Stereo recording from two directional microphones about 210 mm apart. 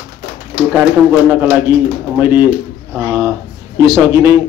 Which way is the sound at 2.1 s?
10° right (ahead or behind).